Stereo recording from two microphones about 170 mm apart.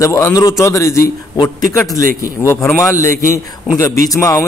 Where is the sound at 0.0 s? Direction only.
20° left (ahead or behind).